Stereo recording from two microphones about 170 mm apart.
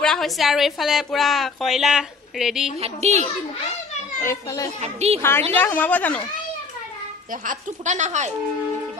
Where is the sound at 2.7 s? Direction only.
40° right (ahead or behind).